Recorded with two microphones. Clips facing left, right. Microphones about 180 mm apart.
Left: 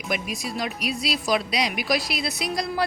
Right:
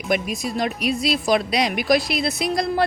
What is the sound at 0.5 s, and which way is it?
Speech, 50° right (ahead or behind).